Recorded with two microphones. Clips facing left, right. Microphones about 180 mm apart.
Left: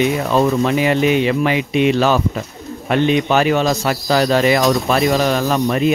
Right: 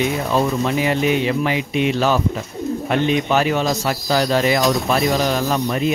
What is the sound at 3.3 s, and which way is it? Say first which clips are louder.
Speech: left 3 dB; 75° left (ahead or behind).